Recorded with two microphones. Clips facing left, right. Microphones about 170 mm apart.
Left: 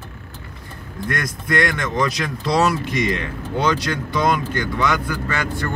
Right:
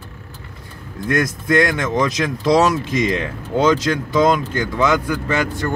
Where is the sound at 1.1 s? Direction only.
25° right (ahead or behind).